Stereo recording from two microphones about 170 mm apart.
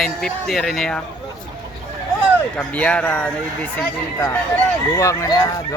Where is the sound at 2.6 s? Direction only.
5° left (ahead or behind).